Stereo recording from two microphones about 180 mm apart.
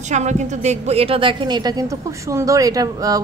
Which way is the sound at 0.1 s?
40° right (ahead or behind).